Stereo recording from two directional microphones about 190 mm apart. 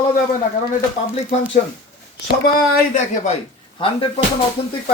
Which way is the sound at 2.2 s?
45° left (ahead or behind).